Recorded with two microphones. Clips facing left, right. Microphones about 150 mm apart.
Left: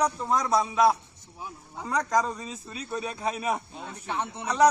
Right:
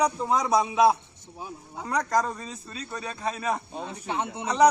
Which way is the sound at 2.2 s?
10° left (ahead or behind).